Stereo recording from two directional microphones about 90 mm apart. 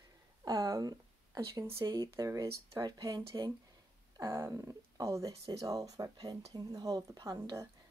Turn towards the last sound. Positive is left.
turn(degrees=-45)  # may be behind; listen again after turning